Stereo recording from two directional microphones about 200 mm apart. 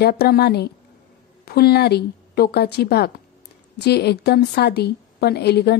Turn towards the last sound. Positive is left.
turn(degrees=55)  # may be behind; listen again after turning